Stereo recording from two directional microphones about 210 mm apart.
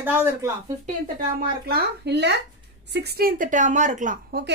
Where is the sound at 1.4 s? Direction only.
50° right (ahead or behind).